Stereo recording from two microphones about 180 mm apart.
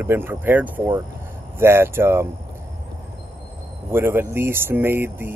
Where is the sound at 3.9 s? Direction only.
10° right (ahead or behind).